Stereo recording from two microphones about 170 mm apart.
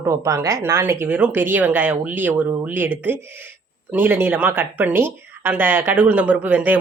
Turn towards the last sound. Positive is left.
turn(degrees=-10)  # may be behind; listen again after turning